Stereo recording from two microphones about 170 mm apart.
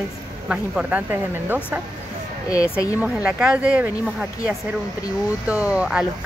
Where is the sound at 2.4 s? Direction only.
20° left (ahead or behind).